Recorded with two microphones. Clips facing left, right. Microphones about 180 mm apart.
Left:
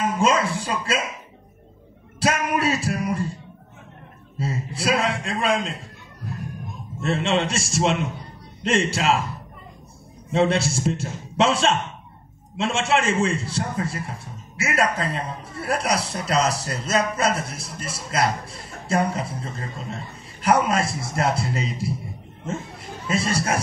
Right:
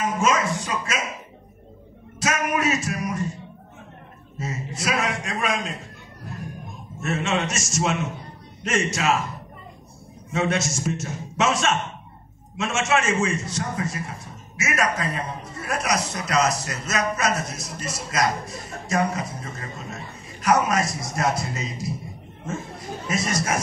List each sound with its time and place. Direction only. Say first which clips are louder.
0.2 s speech: left 2 dB; 30° left (ahead or behind)
2.1 s music: left 2 dB; 30° left (ahead or behind)
4.4 s a man's voice: left 3 dB; 30° left (ahead or behind)
7.0 s a man's voice: left 3 dB; 30° left (ahead or behind)
10.3 s a man's voice: left 4 dB; 30° left (ahead or behind)
23.0 s a man's voice: left 2 dB; 30° left (ahead or behind)